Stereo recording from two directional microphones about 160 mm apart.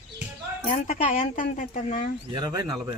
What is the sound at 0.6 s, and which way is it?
Speech, 50° left (ahead or behind).